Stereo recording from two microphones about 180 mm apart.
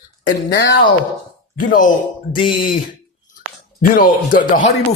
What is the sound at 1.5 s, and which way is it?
Speech, 45° left (ahead or behind).